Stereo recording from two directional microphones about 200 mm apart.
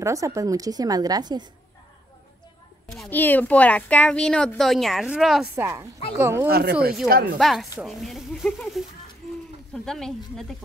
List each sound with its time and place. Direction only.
0.0 s a woman's voice: 15° right (ahead or behind)
2.9 s a woman's voice: 5° left (ahead or behind); by 6.4 s 15° right (ahead or behind)
6.4 s speech: 55° right (ahead or behind)
7.3 s speech: centre (ahead or behind)
9.8 s speech: centre (ahead or behind)